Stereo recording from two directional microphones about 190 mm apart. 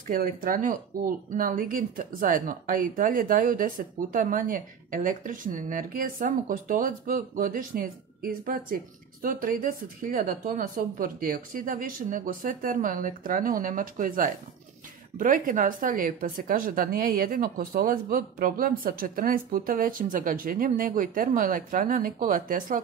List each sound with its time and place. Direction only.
0.0 s speech: 45° right (ahead or behind)